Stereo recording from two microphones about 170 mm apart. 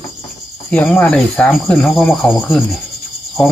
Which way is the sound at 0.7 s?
5° left (ahead or behind).